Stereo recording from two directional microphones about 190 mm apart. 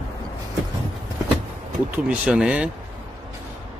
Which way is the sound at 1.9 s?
5° right (ahead or behind).